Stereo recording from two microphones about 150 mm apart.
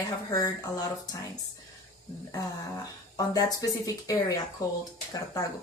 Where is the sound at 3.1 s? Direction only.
25° left (ahead or behind).